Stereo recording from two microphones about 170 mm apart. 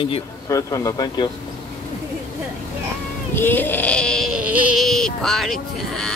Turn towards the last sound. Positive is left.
turn(degrees=5)  # may be behind; listen again after turning